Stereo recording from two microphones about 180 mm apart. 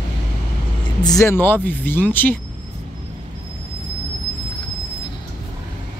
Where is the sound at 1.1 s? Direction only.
15° left (ahead or behind).